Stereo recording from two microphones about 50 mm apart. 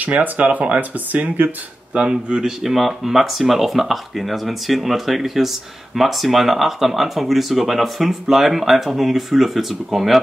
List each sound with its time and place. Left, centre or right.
0.0 s speech: right
2.0 s a man's voice: right
2.6 s speech: centre